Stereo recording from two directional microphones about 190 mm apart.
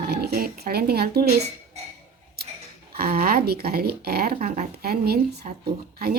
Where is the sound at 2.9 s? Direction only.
50° right (ahead or behind).